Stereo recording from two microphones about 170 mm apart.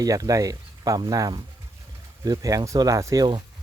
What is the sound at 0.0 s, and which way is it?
Speech, 20° right (ahead or behind).